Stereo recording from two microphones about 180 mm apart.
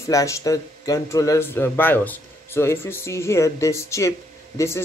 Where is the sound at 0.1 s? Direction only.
20° left (ahead or behind).